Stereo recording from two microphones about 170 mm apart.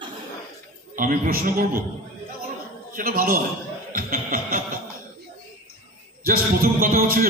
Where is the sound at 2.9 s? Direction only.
55° right (ahead or behind).